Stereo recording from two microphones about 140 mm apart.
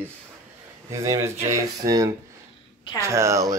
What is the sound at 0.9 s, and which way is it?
Speech, 25° right (ahead or behind).